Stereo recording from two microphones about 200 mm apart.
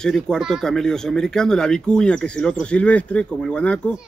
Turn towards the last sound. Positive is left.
turn(degrees=5)  # may be behind; listen again after turning